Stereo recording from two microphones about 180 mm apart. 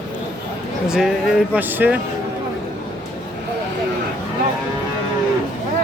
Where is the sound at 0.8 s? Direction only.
5° right (ahead or behind).